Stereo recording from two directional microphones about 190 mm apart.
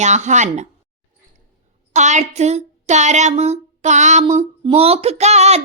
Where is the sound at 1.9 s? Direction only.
40° right (ahead or behind).